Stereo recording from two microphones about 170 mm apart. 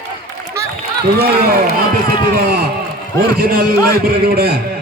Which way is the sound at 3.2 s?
65° right (ahead or behind).